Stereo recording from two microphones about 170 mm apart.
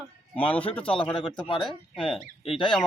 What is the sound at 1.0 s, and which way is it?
Speech, 30° left (ahead or behind).